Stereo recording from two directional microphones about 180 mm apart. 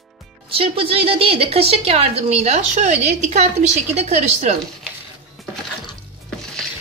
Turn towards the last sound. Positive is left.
turn(degrees=5)  # may be behind; listen again after turning